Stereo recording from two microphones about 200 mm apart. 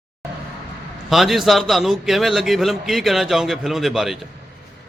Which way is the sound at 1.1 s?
Centre (ahead or behind).